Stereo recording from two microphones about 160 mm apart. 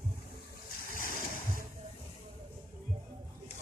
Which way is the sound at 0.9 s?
60° left (ahead or behind).